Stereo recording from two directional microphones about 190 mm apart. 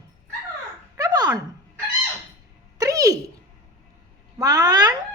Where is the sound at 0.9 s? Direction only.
20° right (ahead or behind).